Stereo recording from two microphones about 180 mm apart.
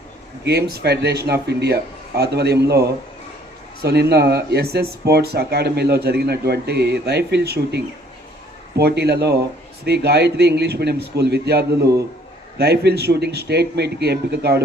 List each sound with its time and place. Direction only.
0.4 s speech: 65° right (ahead or behind)
3.8 s speech: 65° right (ahead or behind)